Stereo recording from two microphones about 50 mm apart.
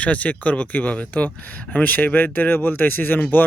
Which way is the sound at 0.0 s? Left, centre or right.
Left.